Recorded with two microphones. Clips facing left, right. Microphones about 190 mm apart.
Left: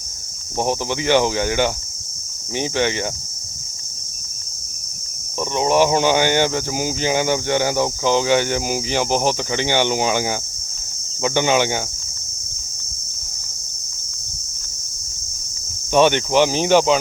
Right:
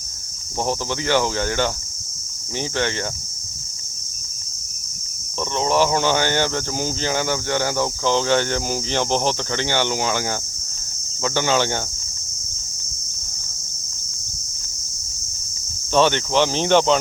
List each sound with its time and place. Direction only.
0.6 s speech: 15° left (ahead or behind)
5.4 s speech: 15° left (ahead or behind)
15.9 s speech: 15° left (ahead or behind)